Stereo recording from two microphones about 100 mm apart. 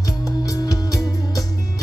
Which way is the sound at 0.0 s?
35° left (ahead or behind).